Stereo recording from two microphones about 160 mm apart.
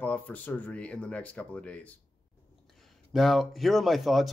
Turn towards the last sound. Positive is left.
turn(degrees=0)  # may be behind; listen again after turning